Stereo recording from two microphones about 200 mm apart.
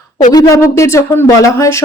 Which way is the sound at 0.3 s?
15° left (ahead or behind).